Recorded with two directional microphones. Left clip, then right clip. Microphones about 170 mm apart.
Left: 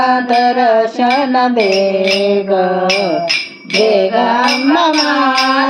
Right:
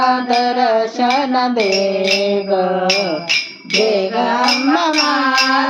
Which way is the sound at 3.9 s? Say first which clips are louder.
Left 4 dB; 10° left (ahead or behind).